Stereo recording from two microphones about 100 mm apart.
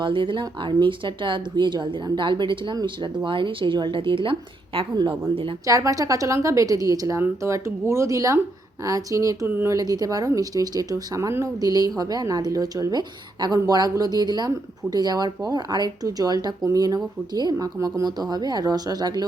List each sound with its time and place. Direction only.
0.0 s a woman's voice: 55° right (ahead or behind)
5.6 s speech: 35° right (ahead or behind)